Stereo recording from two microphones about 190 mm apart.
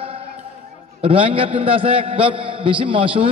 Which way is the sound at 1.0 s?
30° right (ahead or behind).